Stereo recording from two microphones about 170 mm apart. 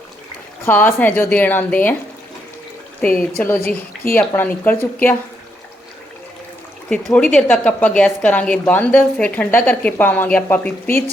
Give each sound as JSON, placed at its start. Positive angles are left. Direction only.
{"t": 0.6, "sound": "a woman's voice", "side_deg": 10}
{"t": 3.2, "sound": "a woman's voice", "side_deg": 10}
{"t": 6.9, "sound": "a woman's voice", "side_deg": 10}